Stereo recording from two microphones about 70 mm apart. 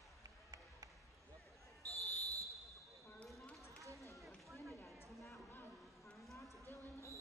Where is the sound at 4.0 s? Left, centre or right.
Left.